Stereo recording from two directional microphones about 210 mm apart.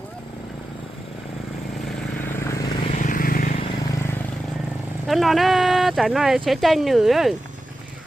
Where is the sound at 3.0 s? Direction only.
40° left (ahead or behind).